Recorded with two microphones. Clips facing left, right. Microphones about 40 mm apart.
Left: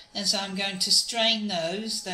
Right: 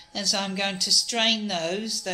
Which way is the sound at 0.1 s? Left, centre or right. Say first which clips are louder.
Right 2 dB; centre.